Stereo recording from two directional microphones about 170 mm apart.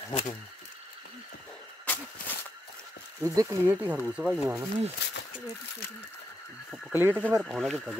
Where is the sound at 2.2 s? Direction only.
55° left (ahead or behind).